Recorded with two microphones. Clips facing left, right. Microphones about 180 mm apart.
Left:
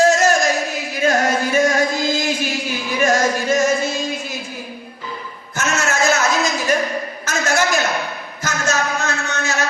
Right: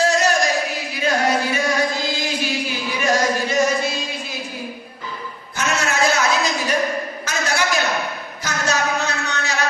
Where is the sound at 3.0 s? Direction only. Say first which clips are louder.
Left 2 dB; 45° left (ahead or behind).